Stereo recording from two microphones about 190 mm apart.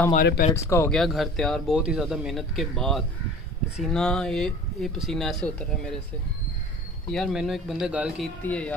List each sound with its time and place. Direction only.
0.1 s speech: 45° left (ahead or behind)
0.7 s speech: 15° left (ahead or behind)
0.9 s speech: centre (ahead or behind)
7.1 s speech: centre (ahead or behind)
8.5 s speech: 5° left (ahead or behind)